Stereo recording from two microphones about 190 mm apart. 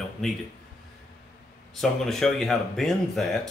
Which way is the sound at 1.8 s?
Centre (ahead or behind).